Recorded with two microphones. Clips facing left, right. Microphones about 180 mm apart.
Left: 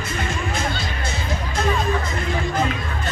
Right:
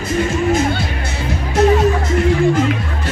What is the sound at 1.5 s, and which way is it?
Music, 70° right (ahead or behind).